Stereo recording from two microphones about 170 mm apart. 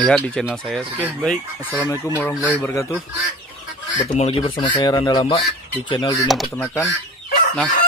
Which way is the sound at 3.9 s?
45° left (ahead or behind).